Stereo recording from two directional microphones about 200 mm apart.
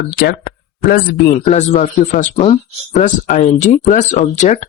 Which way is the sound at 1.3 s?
35° left (ahead or behind).